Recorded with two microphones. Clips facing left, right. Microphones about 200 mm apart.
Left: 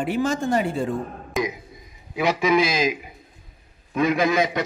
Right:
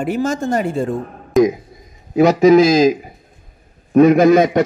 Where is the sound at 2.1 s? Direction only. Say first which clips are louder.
Right 11 dB; 40° right (ahead or behind).